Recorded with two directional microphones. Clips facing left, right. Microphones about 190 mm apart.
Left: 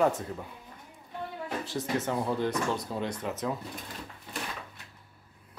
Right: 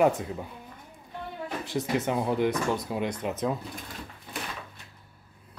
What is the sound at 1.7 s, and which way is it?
Speech, 15° right (ahead or behind).